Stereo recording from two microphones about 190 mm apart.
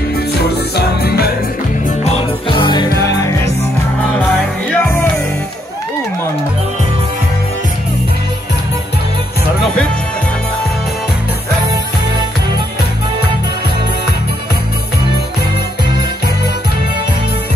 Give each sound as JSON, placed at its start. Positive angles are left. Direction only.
{"t": 0.3, "sound": "music", "side_deg": 55}
{"t": 1.9, "sound": "music", "side_deg": 35}